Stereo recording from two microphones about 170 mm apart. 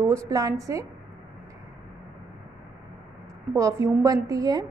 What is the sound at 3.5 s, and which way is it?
A woman's voice, 20° right (ahead or behind).